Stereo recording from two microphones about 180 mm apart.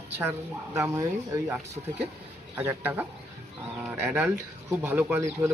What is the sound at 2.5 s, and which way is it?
Speech, 10° right (ahead or behind).